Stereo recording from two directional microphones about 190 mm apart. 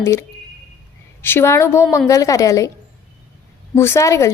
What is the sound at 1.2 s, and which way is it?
A woman's voice, 10° left (ahead or behind).